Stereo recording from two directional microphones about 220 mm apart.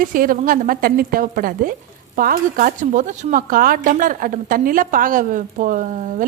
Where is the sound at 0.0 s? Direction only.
40° right (ahead or behind).